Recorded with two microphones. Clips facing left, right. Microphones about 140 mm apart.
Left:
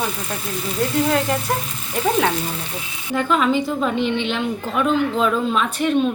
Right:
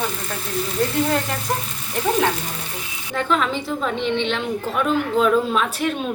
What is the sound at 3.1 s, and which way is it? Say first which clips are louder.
A woman's voice: left 3 dB; 5° left (ahead or behind).